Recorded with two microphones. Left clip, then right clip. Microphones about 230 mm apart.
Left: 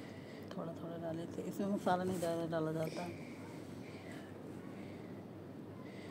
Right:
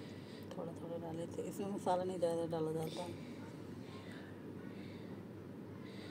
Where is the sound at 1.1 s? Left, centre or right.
Left.